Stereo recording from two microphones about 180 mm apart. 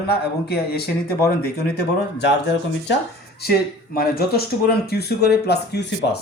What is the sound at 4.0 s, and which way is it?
Speech, 60° left (ahead or behind).